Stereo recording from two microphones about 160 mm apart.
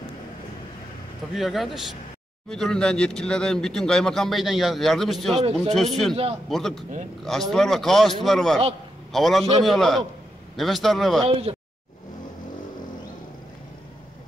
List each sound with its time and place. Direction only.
1.3 s speech: centre (ahead or behind)
5.4 s speech: 40° right (ahead or behind)
5.8 s speech: centre (ahead or behind)
11.5 s a sound: 35° right (ahead or behind)